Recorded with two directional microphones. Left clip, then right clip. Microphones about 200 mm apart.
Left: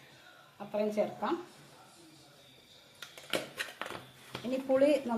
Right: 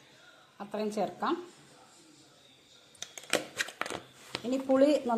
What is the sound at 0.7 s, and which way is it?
Speech, 40° right (ahead or behind).